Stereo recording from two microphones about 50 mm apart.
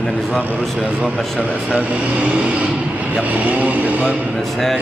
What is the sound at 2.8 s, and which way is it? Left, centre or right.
Vehicle, right.